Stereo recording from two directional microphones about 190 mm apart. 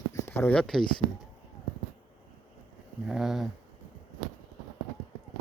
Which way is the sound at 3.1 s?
Centre (ahead or behind).